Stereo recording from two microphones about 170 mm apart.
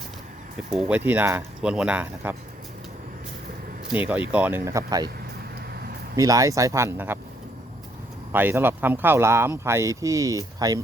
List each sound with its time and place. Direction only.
0.7 s speech: 5° right (ahead or behind)
3.8 s speech: 10° right (ahead or behind)
6.1 s speech: 20° right (ahead or behind)
8.3 s speech: 10° right (ahead or behind)